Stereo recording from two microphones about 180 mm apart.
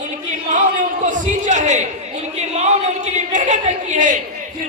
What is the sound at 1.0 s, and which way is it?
Speech, 45° right (ahead or behind).